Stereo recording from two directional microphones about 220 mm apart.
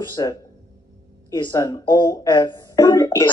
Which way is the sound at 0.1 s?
15° left (ahead or behind).